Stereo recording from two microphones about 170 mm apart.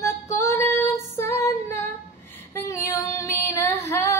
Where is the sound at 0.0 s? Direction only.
15° left (ahead or behind).